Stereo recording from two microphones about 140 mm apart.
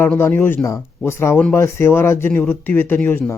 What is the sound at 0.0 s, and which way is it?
Speech, 15° left (ahead or behind).